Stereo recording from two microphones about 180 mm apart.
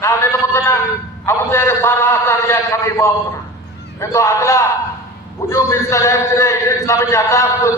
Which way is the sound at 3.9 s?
15° left (ahead or behind).